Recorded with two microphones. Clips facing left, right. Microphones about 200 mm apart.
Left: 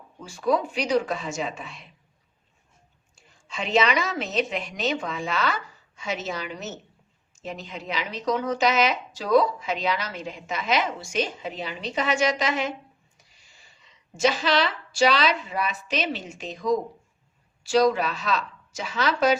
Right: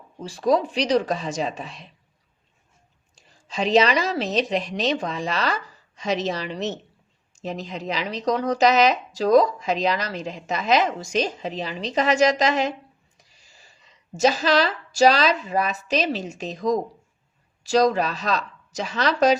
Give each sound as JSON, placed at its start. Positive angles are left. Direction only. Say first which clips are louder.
{"t": 0.2, "sound": "a woman's voice", "louder": "right 3 dB", "side_deg": -35}
{"t": 3.3, "sound": "a woman's voice", "louder": "right 5 dB", "side_deg": -35}